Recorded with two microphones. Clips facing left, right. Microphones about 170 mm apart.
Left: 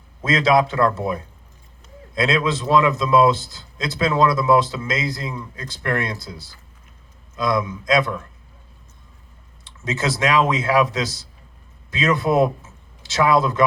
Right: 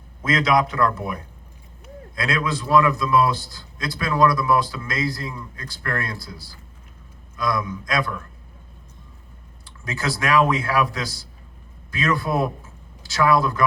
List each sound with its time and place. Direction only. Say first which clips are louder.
0.2 s a man's voice: left 3 dB; 25° left (ahead or behind)
9.6 s a man's voice: left 4 dB; 20° left (ahead or behind)